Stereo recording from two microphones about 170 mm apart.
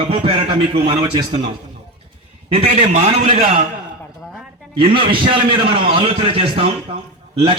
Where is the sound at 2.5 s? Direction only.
35° right (ahead or behind).